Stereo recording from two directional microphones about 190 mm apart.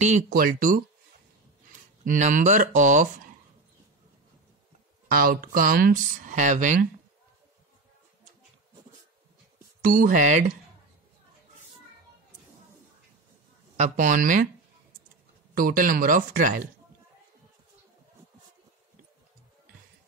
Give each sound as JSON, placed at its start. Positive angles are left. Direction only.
{"t": 0.0, "sound": "speech", "side_deg": -40}
{"t": 2.0, "sound": "speech", "side_deg": -40}
{"t": 5.0, "sound": "speech", "side_deg": -50}
{"t": 9.8, "sound": "speech", "side_deg": -45}
{"t": 13.7, "sound": "speech", "side_deg": -40}
{"t": 15.5, "sound": "speech", "side_deg": -50}